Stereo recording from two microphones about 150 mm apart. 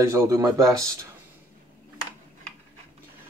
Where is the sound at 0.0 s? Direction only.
20° right (ahead or behind).